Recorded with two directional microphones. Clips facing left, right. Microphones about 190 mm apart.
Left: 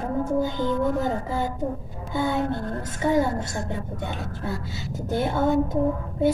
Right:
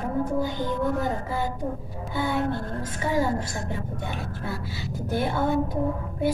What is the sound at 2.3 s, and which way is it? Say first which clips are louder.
A woman's voice: left 1 dB; 20° left (ahead or behind).